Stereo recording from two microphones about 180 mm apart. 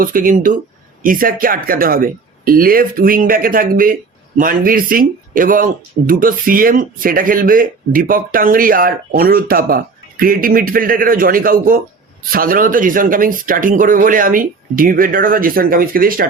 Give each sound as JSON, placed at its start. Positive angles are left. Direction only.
{"t": 0.0, "sound": "speech", "side_deg": -50}